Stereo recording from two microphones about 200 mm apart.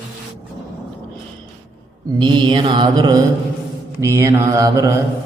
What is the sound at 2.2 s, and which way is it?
Mantra, 25° right (ahead or behind).